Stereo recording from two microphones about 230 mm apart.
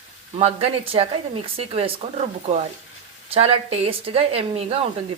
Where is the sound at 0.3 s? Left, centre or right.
Right.